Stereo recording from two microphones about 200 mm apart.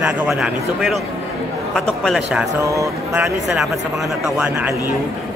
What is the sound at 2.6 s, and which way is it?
Speech, 15° right (ahead or behind).